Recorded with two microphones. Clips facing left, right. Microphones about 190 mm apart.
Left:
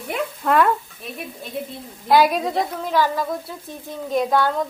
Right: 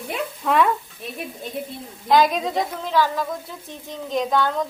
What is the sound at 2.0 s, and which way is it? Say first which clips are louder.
Speech: left 1 dB; 5° left (ahead or behind).